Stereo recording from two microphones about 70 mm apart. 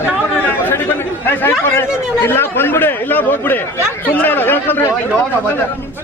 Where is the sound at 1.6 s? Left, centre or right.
Left.